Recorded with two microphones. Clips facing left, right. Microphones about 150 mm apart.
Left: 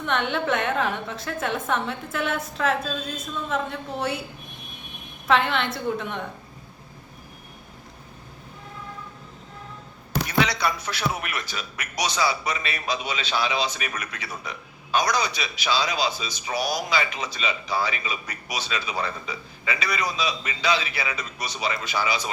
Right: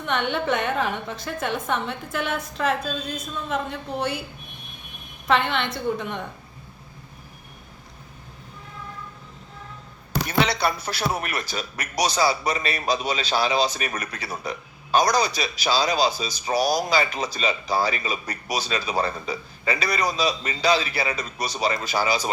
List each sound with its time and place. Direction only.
0.0 s a woman's voice: centre (ahead or behind)
5.3 s a woman's voice: centre (ahead or behind)
10.2 s a man's voice: 30° right (ahead or behind)